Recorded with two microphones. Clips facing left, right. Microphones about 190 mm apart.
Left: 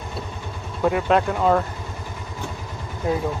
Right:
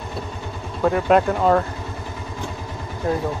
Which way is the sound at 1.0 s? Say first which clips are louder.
Right 4 dB; centre (ahead or behind).